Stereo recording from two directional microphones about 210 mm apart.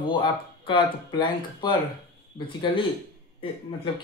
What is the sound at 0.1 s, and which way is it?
Speech, 25° left (ahead or behind).